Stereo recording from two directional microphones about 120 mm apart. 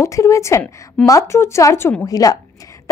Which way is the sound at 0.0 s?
25° left (ahead or behind).